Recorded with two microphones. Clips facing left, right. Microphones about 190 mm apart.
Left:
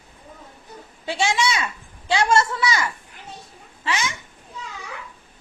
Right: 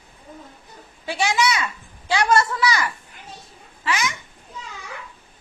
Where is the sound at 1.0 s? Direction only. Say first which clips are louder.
Right 1 dB; 25° left (ahead or behind).